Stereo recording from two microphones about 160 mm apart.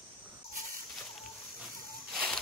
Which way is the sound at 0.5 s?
60° right (ahead or behind).